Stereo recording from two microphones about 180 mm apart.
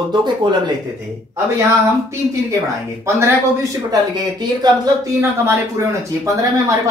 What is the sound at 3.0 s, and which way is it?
A woman's voice, 15° right (ahead or behind).